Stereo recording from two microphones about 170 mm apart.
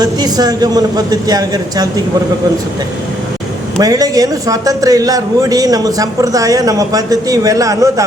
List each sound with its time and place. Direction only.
0.0 s speech: 25° right (ahead or behind)
3.8 s speech: 20° right (ahead or behind)